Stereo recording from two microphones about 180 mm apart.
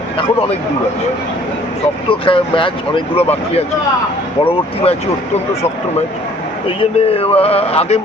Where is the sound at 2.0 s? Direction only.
30° left (ahead or behind).